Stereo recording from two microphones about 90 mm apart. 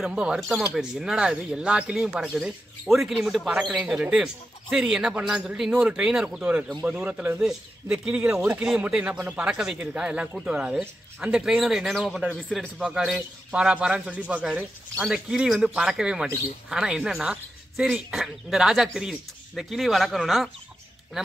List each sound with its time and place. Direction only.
0.0 s speech: 10° right (ahead or behind)
12.3 s a man's voice: 15° left (ahead or behind)
12.5 s speech: 5° right (ahead or behind)